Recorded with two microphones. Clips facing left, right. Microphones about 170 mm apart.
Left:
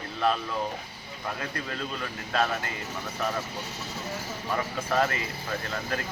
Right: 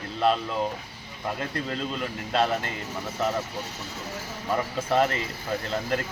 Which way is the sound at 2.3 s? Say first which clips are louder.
Right 3 dB; 25° right (ahead or behind).